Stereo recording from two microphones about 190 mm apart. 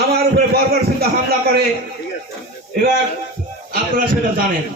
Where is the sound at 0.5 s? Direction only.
55° right (ahead or behind).